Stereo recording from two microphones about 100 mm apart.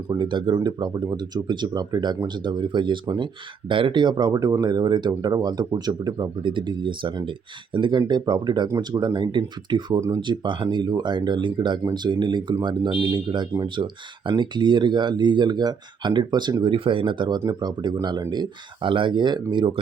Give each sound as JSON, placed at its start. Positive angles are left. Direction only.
{"t": 0.1, "sound": "speech", "side_deg": -50}